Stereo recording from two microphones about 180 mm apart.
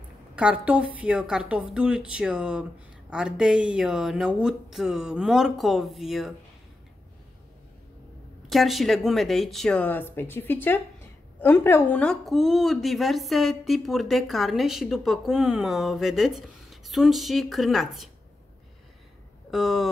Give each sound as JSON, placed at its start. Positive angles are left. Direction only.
{"t": 0.4, "sound": "a woman's voice", "side_deg": -5}
{"t": 8.5, "sound": "a woman's voice", "side_deg": 0}
{"t": 19.5, "sound": "a woman's voice", "side_deg": 0}